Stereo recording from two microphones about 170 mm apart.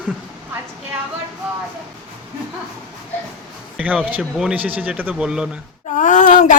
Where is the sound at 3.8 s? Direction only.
10° right (ahead or behind).